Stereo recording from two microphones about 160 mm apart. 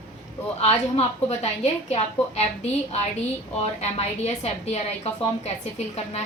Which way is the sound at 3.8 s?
40° left (ahead or behind).